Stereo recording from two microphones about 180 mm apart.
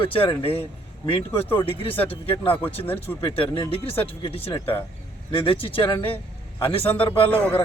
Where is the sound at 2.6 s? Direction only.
10° left (ahead or behind).